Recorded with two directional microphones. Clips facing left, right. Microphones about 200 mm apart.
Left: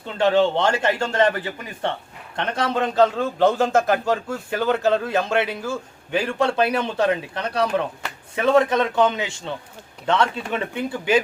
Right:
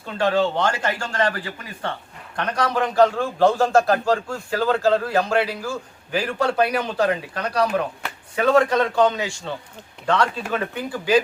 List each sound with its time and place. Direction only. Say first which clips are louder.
0.2 s a man's voice: left 2 dB; 25° left (ahead or behind)